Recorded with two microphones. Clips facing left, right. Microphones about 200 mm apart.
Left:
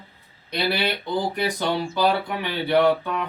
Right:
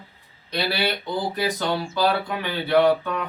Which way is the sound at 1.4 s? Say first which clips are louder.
Even; 15° left (ahead or behind).